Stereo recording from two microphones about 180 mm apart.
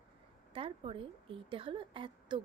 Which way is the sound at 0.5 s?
30° right (ahead or behind).